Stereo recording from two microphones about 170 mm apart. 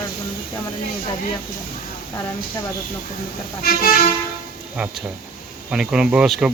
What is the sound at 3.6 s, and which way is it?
Speech, 60° left (ahead or behind).